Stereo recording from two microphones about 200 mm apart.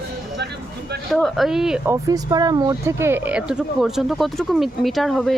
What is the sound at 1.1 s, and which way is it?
Speech, centre (ahead or behind).